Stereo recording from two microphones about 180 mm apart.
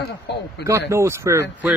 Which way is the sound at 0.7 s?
15° right (ahead or behind).